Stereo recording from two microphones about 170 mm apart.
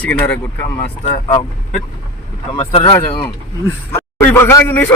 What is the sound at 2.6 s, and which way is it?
Speech, 35° left (ahead or behind).